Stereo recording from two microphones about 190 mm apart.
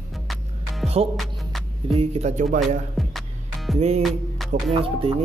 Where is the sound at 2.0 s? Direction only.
35° right (ahead or behind).